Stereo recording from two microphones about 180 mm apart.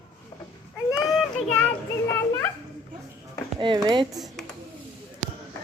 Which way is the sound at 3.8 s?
20° right (ahead or behind).